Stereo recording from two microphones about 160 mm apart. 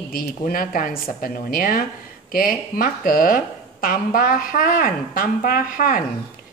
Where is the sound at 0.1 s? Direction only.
65° left (ahead or behind).